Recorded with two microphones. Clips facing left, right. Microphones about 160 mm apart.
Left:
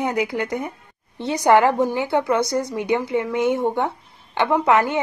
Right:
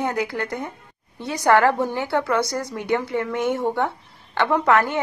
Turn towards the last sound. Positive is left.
turn(degrees=15)  # may be behind; listen again after turning